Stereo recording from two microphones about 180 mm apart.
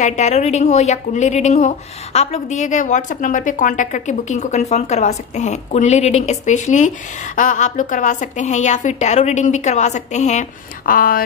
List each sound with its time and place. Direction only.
0.0 s a woman's voice: 40° left (ahead or behind)
10.9 s speech: 50° left (ahead or behind)